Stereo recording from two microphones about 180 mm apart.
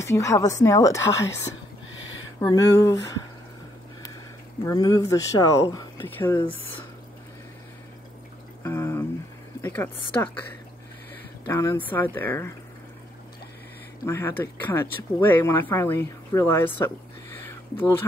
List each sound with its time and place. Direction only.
0.0 s speech: 15° left (ahead or behind)
4.6 s speech: 20° left (ahead or behind)
8.6 s a sound: 15° left (ahead or behind)
11.4 s speech: 15° left (ahead or behind)
14.0 s speech: 15° left (ahead or behind)